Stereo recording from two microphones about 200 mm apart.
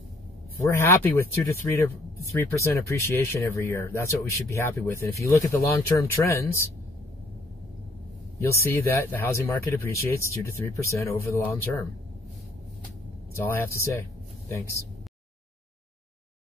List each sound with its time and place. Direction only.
0.7 s speech: 15° left (ahead or behind)
8.6 s speech: 10° left (ahead or behind)
13.5 s speech: 15° left (ahead or behind)